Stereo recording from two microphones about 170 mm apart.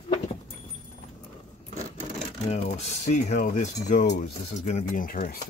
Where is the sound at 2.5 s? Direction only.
40° left (ahead or behind).